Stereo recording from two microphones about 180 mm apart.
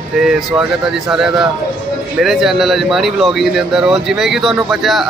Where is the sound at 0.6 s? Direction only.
5° right (ahead or behind).